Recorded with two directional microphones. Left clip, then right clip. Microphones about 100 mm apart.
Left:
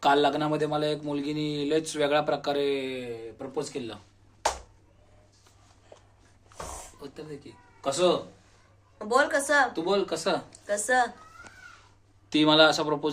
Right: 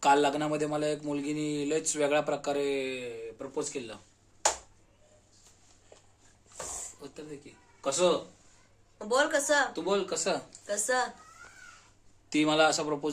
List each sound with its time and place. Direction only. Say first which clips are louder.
0.0 s speech: left 2 dB; 25° right (ahead or behind)
5.9 s a sound: left 4 dB; 15° left (ahead or behind)
7.0 s a sound: left 3 dB; 25° right (ahead or behind)
7.8 s speech: left 2 dB; 25° right (ahead or behind)
9.0 s a woman's voice: left 3 dB; 40° right (ahead or behind)
9.8 s speech: left 3 dB; 20° right (ahead or behind)
10.7 s a woman's voice: left 5 dB; 35° right (ahead or behind)
12.3 s speech: left 5 dB; 20° right (ahead or behind)